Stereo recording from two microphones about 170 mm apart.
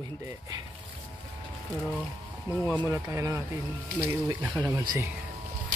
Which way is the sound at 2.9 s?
15° right (ahead or behind).